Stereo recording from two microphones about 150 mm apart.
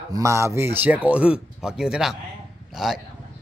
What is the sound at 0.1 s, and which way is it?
A man's voice, 20° right (ahead or behind).